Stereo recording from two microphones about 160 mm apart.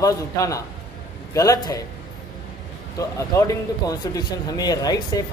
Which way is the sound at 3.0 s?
20° left (ahead or behind).